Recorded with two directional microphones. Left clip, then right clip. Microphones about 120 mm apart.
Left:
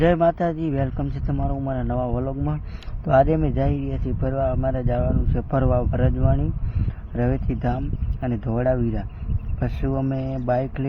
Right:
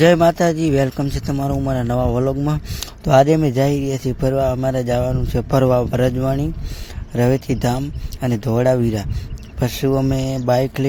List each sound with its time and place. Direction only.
0.0 s speech: 45° right (ahead or behind)
3.0 s speech: 35° right (ahead or behind)